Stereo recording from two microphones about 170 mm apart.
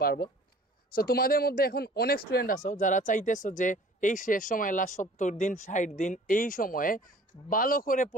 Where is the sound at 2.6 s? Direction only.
50° left (ahead or behind).